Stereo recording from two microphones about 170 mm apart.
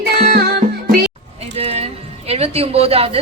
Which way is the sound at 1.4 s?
40° right (ahead or behind).